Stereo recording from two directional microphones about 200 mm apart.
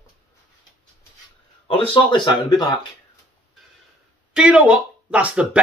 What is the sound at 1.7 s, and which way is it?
Speech, 25° left (ahead or behind).